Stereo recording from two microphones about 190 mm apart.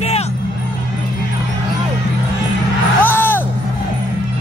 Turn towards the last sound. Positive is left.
turn(degrees=10)  # may be behind; listen again after turning